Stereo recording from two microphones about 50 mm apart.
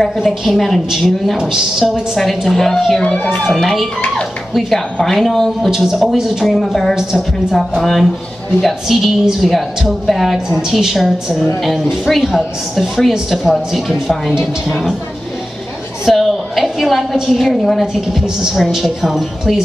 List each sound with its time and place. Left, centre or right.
0.3 s a woman's voice: centre
4.6 s a woman's voice: centre
5.7 s a woman's voice: centre
7.8 s a woman's voice: centre
16.1 s a woman's voice: centre
18.2 s a woman's voice: centre